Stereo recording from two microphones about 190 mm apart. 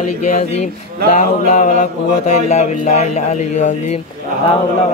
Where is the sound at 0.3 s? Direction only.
35° left (ahead or behind).